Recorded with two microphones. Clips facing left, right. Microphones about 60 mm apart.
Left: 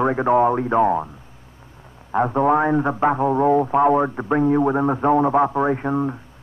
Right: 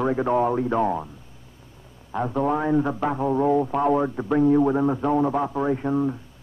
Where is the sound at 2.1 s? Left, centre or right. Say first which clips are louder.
Left 6 dB; left.